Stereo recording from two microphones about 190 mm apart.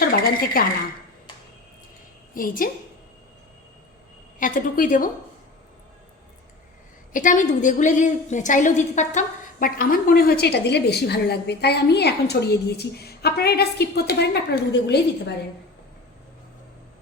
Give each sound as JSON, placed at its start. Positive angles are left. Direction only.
{"t": 0.0, "sound": "a sound", "side_deg": 50}
{"t": 2.3, "sound": "a woman's voice", "side_deg": 45}
{"t": 4.4, "sound": "a woman's voice", "side_deg": 45}
{"t": 7.1, "sound": "a woman's voice", "side_deg": 40}